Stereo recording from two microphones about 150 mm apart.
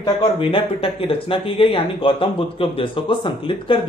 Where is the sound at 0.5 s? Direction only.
40° left (ahead or behind).